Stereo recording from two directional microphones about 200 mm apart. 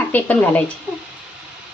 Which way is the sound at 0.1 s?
10° left (ahead or behind).